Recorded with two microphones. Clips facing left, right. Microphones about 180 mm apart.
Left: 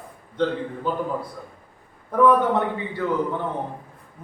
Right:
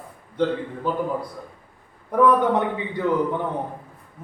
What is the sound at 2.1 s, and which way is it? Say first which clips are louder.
Speech: even; 20° right (ahead or behind).